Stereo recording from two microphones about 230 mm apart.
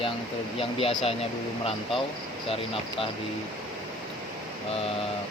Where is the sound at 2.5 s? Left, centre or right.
Left.